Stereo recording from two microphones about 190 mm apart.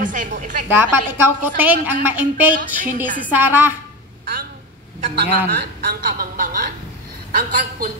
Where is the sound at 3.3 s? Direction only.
10° right (ahead or behind).